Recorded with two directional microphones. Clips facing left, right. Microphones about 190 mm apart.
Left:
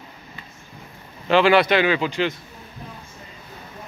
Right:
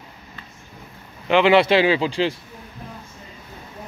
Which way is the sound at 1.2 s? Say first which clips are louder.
Right 1 dB; 20° right (ahead or behind).